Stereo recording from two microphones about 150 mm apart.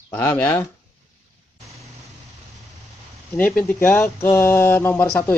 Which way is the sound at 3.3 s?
10° left (ahead or behind).